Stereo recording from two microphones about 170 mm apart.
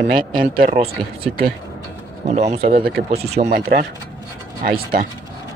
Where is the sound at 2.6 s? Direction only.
60° right (ahead or behind).